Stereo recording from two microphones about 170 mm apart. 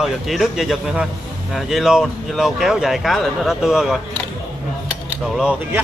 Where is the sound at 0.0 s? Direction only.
Centre (ahead or behind).